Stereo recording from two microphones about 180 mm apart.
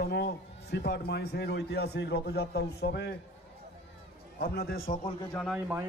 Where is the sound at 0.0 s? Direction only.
65° left (ahead or behind).